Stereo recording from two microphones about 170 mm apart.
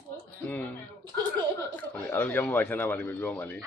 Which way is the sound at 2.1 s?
10° left (ahead or behind).